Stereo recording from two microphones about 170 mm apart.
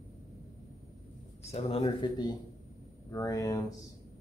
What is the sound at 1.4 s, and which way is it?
Speech, 40° left (ahead or behind).